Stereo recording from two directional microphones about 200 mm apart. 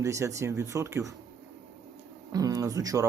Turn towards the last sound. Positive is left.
turn(degrees=-15)  # may be behind; listen again after turning